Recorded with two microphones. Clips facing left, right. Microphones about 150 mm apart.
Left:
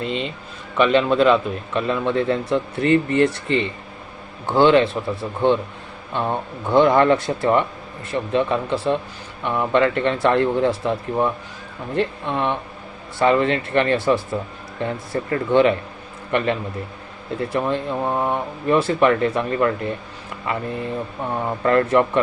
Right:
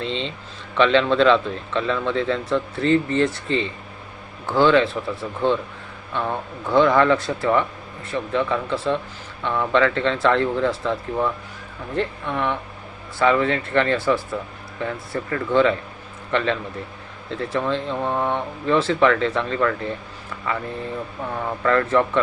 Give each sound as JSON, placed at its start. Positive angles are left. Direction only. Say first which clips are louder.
{"t": 0.0, "sound": "a man's voice", "louder": "left 2 dB", "side_deg": 10}
{"t": 2.8, "sound": "speech", "louder": "left 2 dB", "side_deg": 60}
{"t": 4.4, "sound": "a man's voice", "louder": "left 2 dB", "side_deg": 20}